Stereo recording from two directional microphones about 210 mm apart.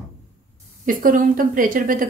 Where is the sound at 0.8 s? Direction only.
40° right (ahead or behind).